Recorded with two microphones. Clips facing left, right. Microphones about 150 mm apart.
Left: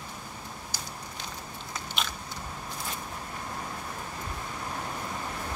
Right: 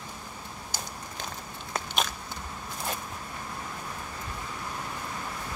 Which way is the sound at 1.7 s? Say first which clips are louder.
Right 5 dB; 45° right (ahead or behind).